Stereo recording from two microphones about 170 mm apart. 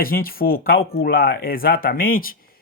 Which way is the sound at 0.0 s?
60° left (ahead or behind).